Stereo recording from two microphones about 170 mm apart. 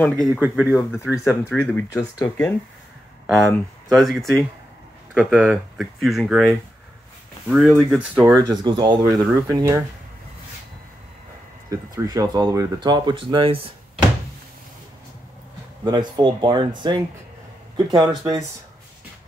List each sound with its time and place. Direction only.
0.0 s speech: 5° left (ahead or behind)
0.3 s speech: 5° right (ahead or behind)
0.7 s speech: 15° left (ahead or behind); by 8.4 s 5° right (ahead or behind)
8.5 s speech: 25° right (ahead or behind)
11.7 s speech: 20° right (ahead or behind)
15.8 s speech: 25° right (ahead or behind)